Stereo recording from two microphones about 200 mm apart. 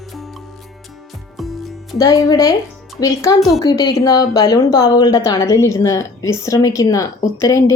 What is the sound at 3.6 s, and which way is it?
A woman's voice, 20° left (ahead or behind).